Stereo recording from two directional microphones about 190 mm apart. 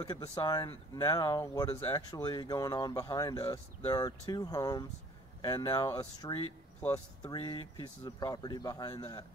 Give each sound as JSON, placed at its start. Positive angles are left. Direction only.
{"t": 0.0, "sound": "speech", "side_deg": 25}